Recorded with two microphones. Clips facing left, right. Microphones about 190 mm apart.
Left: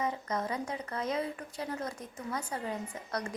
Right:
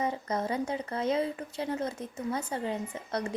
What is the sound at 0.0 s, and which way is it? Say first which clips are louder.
A woman's voice: right 3 dB; 30° right (ahead or behind).